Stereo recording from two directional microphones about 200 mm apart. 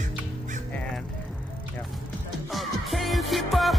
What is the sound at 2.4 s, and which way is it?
Music, centre (ahead or behind).